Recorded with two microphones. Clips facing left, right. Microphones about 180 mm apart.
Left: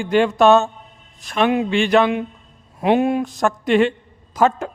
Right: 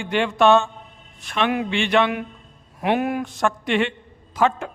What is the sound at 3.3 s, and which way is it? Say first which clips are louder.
A woman's voice: left 4 dB; 40° left (ahead or behind).